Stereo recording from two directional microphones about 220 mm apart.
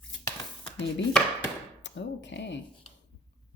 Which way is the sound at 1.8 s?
55° left (ahead or behind).